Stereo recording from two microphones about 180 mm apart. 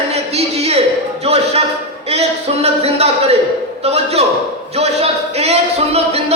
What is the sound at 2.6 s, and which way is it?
A man's voice, 35° right (ahead or behind).